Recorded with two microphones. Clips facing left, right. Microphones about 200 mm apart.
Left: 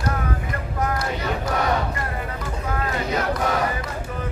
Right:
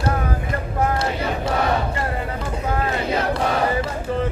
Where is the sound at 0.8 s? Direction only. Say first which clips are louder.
Right 3 dB; 25° right (ahead or behind).